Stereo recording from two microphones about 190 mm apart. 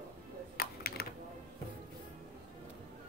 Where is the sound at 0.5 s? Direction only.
55° left (ahead or behind).